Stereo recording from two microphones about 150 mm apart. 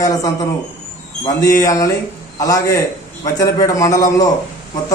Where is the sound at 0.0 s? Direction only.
25° left (ahead or behind).